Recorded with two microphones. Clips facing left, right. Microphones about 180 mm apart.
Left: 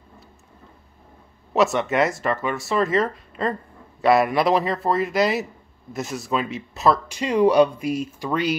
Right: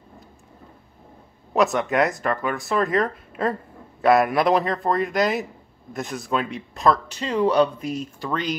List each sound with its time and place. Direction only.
1.5 s speech: centre (ahead or behind)